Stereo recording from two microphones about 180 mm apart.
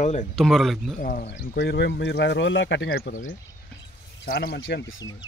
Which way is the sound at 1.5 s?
70° left (ahead or behind).